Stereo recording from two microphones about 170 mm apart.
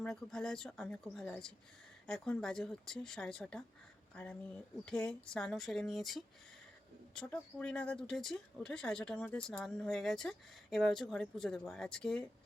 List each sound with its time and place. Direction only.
0.0 s speech: 5° left (ahead or behind)